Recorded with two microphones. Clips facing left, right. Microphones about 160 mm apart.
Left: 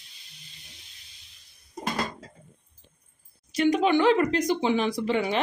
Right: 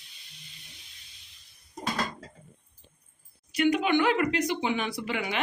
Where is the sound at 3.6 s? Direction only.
35° left (ahead or behind).